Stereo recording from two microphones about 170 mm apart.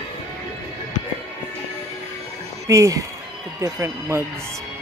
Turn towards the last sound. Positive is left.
turn(degrees=-15)  # may be behind; listen again after turning